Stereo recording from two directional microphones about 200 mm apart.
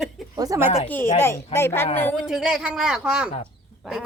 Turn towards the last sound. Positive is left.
turn(degrees=0)  # may be behind; listen again after turning